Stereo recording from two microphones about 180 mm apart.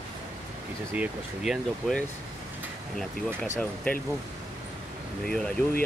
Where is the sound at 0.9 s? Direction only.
5° right (ahead or behind).